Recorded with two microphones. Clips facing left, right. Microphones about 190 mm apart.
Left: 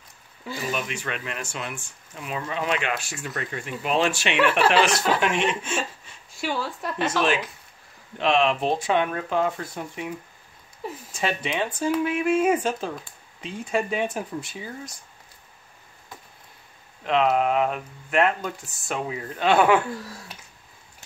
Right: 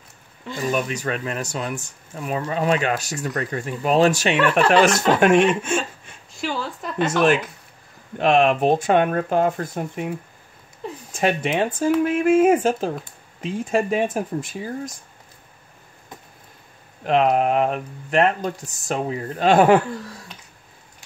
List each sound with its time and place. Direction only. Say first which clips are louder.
0.7 s speech: right 7 dB; 40° right (ahead or behind)
6.3 s speech: right 1 dB; centre (ahead or behind)
7.2 s speech: right 7 dB; 55° right (ahead or behind)
10.8 s speech: right 2 dB; 5° left (ahead or behind)
11.1 s speech: right 6 dB; 50° right (ahead or behind)
17.0 s speech: right 3 dB; 45° right (ahead or behind)